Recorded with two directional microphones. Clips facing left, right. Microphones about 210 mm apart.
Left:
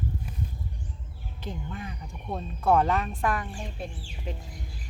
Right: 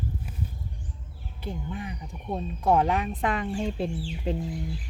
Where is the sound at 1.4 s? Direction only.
15° right (ahead or behind).